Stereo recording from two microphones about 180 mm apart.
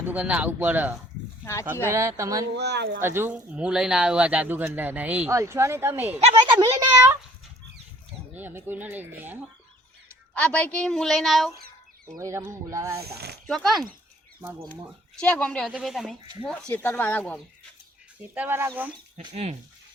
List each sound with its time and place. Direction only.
0.0 s speech: 10° right (ahead or behind)
2.6 s speech: 70° right (ahead or behind)
3.0 s speech: 10° right (ahead or behind)
6.1 s speech: 30° right (ahead or behind)
6.7 s speech: 15° right (ahead or behind)
8.4 s speech: 10° right (ahead or behind)
10.3 s speech: 10° left (ahead or behind)
12.1 s speech: 20° right (ahead or behind)
13.0 s speech: 65° right (ahead or behind)
13.5 s speech: centre (ahead or behind)
18.2 s speech: 10° right (ahead or behind)
19.3 s speech: 40° right (ahead or behind)